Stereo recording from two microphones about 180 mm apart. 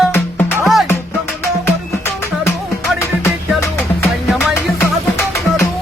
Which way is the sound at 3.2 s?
15° left (ahead or behind).